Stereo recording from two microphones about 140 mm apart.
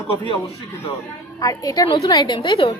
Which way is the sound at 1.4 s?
25° left (ahead or behind).